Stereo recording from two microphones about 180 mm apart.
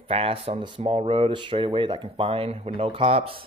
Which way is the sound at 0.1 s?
35° right (ahead or behind).